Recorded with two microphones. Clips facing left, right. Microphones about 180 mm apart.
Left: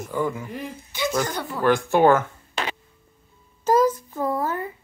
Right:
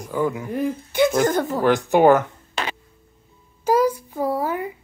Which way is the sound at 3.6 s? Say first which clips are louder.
Even; 10° right (ahead or behind).